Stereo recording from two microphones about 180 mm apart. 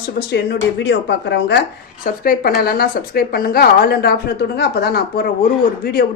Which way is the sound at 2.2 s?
55° left (ahead or behind).